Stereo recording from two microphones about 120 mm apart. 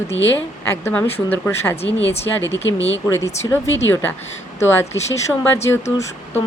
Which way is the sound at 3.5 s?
20° left (ahead or behind).